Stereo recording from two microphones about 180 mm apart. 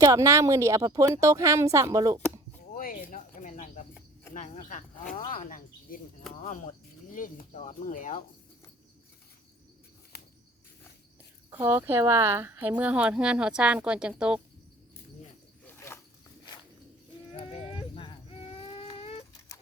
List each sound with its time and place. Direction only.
0.0 s speech: 20° right (ahead or behind)
2.7 s cricket: 45° left (ahead or behind)
4.4 s speech: 40° left (ahead or behind)
10.1 s cricket: 65° left (ahead or behind)
11.5 s speech: 10° right (ahead or behind)
15.6 s a sound: 15° left (ahead or behind)
17.3 s a sound: 35° left (ahead or behind)